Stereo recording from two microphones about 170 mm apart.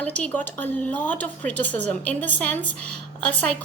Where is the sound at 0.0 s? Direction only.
10° left (ahead or behind).